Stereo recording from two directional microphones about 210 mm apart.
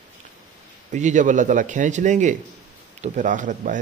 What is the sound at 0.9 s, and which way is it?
Speech, 35° right (ahead or behind).